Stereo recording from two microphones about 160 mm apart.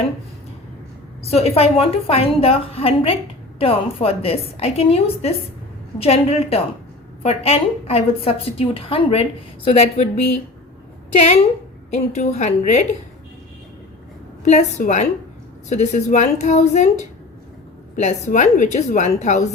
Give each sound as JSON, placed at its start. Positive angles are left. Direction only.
{"t": 1.2, "sound": "a woman's voice", "side_deg": 40}
{"t": 11.9, "sound": "a woman's voice", "side_deg": 45}
{"t": 14.4, "sound": "a woman's voice", "side_deg": 45}